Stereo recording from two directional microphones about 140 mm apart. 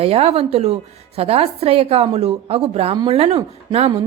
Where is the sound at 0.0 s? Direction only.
45° right (ahead or behind).